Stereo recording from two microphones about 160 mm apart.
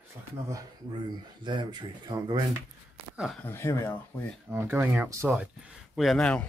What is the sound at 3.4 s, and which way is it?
Speech, 15° left (ahead or behind).